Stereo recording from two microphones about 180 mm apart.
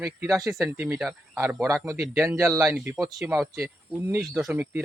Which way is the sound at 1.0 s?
5° right (ahead or behind).